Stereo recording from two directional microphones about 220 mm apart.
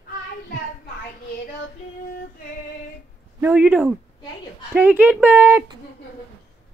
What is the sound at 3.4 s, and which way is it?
A child's voice, 5° right (ahead or behind).